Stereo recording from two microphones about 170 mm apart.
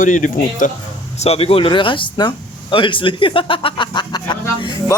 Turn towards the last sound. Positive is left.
turn(degrees=25)  # may be behind; listen again after turning